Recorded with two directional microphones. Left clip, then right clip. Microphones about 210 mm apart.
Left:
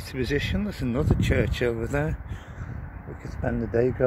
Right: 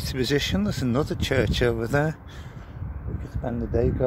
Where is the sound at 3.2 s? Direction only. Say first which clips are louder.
Left 2 dB; centre (ahead or behind).